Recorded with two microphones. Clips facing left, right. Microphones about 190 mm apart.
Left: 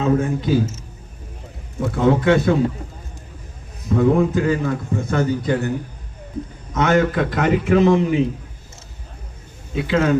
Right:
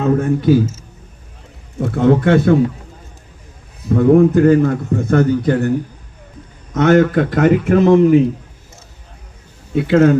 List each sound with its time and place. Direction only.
0.0 s a man's voice: 60° right (ahead or behind)
1.8 s a man's voice: 55° right (ahead or behind)
3.8 s a man's voice: 55° right (ahead or behind)
6.7 s a man's voice: 50° right (ahead or behind)
9.7 s a man's voice: 55° right (ahead or behind)